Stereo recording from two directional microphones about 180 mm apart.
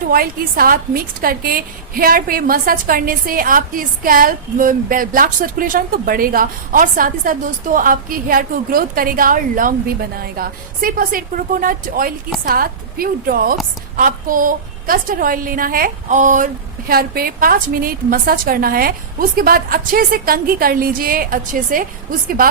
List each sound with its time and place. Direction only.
0.1 s a woman's voice: 55° right (ahead or behind)